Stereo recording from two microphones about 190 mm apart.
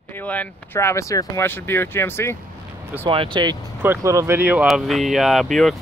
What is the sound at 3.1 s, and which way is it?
Speech, 25° right (ahead or behind).